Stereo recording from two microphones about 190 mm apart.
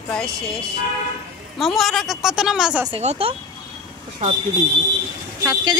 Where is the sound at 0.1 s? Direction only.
5° left (ahead or behind).